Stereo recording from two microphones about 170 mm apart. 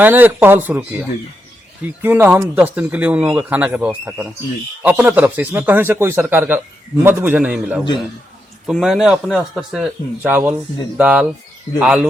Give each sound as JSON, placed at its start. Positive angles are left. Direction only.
{"t": 0.0, "sound": "speech", "side_deg": -10}